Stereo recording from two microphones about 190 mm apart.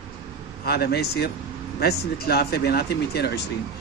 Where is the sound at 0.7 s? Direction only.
55° left (ahead or behind).